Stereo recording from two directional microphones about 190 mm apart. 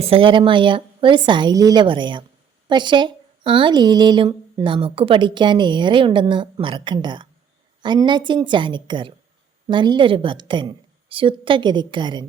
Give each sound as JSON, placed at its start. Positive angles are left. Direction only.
{"t": 0.0, "sound": "speech", "side_deg": -30}